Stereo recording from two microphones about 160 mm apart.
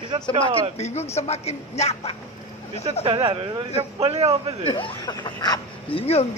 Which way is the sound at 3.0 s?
35° right (ahead or behind).